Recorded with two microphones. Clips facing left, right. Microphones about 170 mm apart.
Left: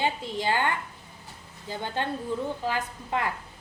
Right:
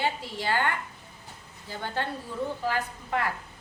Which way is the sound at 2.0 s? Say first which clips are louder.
Left 2 dB; 20° left (ahead or behind).